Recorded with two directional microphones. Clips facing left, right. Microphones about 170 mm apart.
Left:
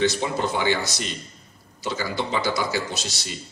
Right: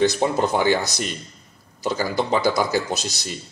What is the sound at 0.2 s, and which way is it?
A man's voice, 45° right (ahead or behind).